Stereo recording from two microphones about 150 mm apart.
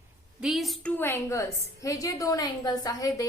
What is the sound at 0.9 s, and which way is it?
A woman's voice, 15° left (ahead or behind).